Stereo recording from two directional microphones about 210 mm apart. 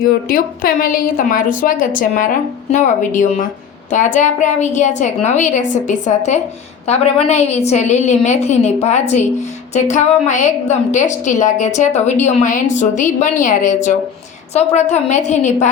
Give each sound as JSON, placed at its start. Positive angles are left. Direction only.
{"t": 0.0, "sound": "a woman's voice", "side_deg": 45}